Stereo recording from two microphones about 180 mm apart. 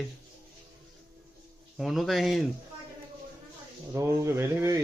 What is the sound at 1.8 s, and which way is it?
Speech, centre (ahead or behind).